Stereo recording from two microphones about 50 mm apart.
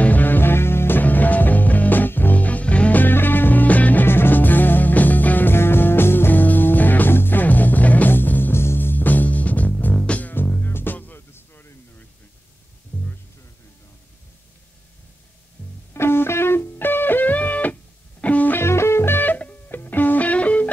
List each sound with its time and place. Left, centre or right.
0.0 s music: left
3.0 s music: left
4.0 s music: left
5.5 s music: left
9.9 s music: left
10.3 s music: left
11.1 s a sound: left
15.9 s music: left
18.6 s music: left